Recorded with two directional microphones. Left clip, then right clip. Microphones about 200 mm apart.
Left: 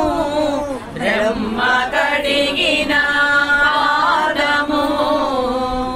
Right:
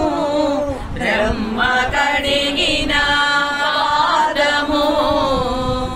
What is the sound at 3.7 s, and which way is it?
Chant, 50° right (ahead or behind).